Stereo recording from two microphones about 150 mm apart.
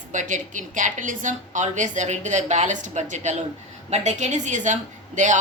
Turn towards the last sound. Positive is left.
turn(degrees=-55)  # may be behind; listen again after turning